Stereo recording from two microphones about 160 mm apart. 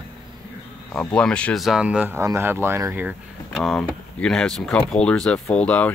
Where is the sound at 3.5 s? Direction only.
5° left (ahead or behind).